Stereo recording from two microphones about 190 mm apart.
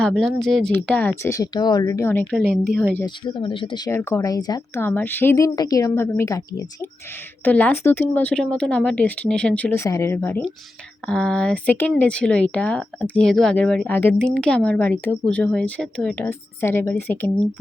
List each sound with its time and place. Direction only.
0.0 s speech: centre (ahead or behind)
3.2 s speech: 25° left (ahead or behind)